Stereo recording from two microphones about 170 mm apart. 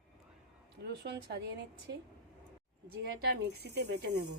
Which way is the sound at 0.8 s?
75° right (ahead or behind).